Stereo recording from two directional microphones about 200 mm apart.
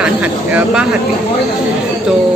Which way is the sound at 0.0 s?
5° right (ahead or behind).